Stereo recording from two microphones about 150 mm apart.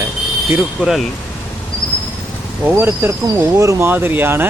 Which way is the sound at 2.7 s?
15° right (ahead or behind).